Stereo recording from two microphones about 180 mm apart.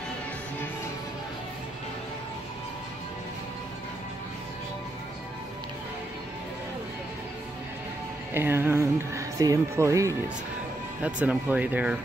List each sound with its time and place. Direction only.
8.4 s speech: 15° right (ahead or behind)